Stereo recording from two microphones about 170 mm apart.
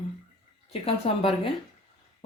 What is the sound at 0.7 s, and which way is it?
Speech, 35° left (ahead or behind).